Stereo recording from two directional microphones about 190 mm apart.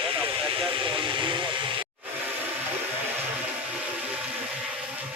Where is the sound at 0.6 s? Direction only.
25° right (ahead or behind).